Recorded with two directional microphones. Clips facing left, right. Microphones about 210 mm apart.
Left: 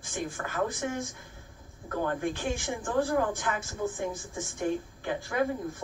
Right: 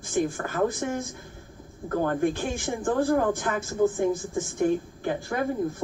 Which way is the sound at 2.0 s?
40° right (ahead or behind).